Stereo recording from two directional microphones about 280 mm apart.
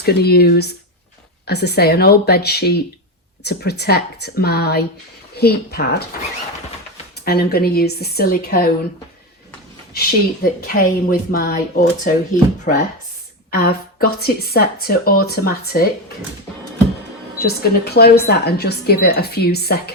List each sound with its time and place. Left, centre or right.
0.0 s a woman's voice: left
7.3 s a woman's voice: left
10.0 s a woman's voice: left
17.4 s a woman's voice: left